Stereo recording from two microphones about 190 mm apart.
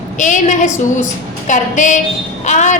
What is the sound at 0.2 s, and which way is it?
A woman's voice, 40° left (ahead or behind).